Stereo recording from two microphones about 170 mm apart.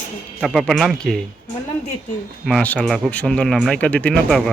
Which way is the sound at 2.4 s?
5° left (ahead or behind).